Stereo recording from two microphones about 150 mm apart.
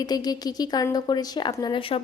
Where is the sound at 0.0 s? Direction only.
25° left (ahead or behind).